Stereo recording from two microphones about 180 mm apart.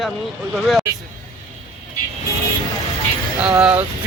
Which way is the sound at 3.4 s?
5° right (ahead or behind).